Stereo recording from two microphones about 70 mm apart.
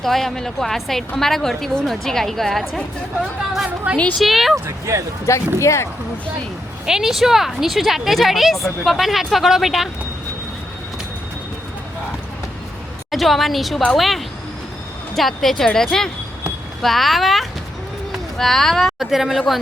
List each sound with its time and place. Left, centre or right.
0.0 s a woman's voice: centre
3.9 s a woman's voice: centre
4.2 s a woman's voice: centre
4.5 s speech: right
5.5 s speech: left
6.8 s a woman's voice: centre
13.1 s a woman's voice: centre